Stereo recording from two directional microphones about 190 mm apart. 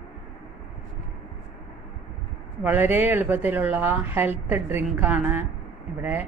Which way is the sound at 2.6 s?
10° right (ahead or behind).